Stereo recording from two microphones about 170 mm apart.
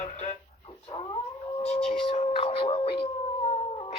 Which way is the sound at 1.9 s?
35° left (ahead or behind).